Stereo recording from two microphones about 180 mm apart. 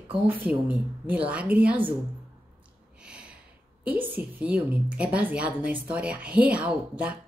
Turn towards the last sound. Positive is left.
turn(degrees=-10)  # may be behind; listen again after turning